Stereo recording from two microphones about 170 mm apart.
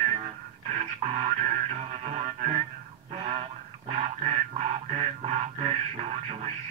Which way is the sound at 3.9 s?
40° right (ahead or behind).